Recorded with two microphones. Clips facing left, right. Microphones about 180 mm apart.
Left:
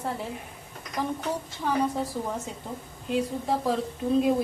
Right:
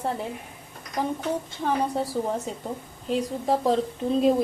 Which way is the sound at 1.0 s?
15° right (ahead or behind).